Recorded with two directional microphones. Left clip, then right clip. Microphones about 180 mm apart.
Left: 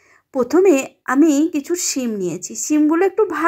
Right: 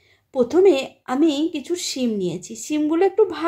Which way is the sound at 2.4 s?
10° left (ahead or behind).